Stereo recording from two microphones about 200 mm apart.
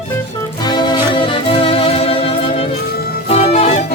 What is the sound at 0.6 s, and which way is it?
Music, 20° left (ahead or behind).